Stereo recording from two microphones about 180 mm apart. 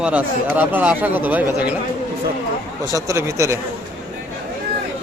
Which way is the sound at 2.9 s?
15° right (ahead or behind).